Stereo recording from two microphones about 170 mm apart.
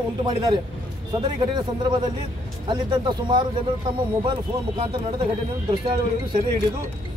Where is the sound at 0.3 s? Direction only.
25° right (ahead or behind).